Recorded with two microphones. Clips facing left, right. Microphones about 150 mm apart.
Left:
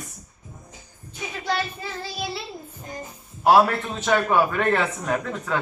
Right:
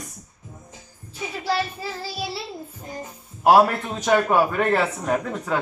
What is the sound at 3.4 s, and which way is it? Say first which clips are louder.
A man's voice: right 1 dB; 10° right (ahead or behind).